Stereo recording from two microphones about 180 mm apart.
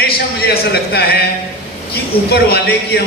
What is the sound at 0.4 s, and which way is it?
Speech, 60° left (ahead or behind).